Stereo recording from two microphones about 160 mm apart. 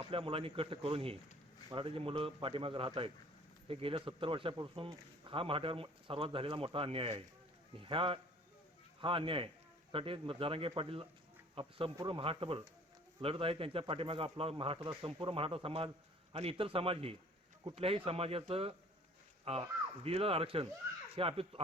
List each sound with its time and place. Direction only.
0.0 s a man's voice: 35° right (ahead or behind)